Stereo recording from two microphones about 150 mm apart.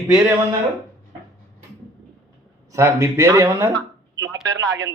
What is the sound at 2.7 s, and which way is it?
Speech, 20° right (ahead or behind).